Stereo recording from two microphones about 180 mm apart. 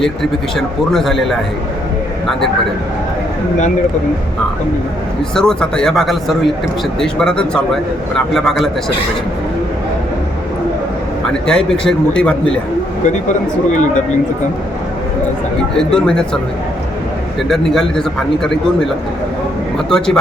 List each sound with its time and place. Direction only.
0.0 s a man's voice: centre (ahead or behind)
5.3 s a man's voice: 5° left (ahead or behind)
11.3 s a man's voice: 5° left (ahead or behind)
13.2 s speech: 40° left (ahead or behind)
15.8 s a man's voice: 5° left (ahead or behind)
17.5 s a man's voice: centre (ahead or behind)